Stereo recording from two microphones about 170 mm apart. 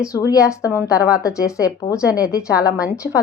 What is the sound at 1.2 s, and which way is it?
A woman's voice, 20° left (ahead or behind).